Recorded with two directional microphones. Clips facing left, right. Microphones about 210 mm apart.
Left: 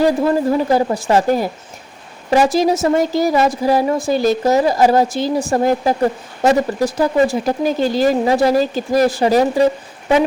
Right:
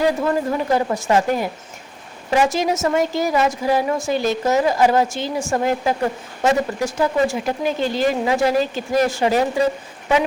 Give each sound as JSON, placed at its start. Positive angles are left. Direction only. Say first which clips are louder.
{"t": 0.0, "sound": "a woman's voice", "louder": "left 4 dB", "side_deg": 30}